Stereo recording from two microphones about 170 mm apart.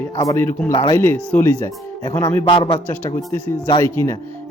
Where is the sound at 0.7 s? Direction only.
25° left (ahead or behind).